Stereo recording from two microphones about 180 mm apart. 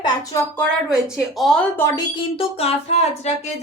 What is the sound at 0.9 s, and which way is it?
Speech, centre (ahead or behind).